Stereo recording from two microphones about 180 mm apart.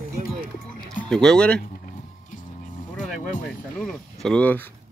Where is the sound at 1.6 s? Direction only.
50° left (ahead or behind).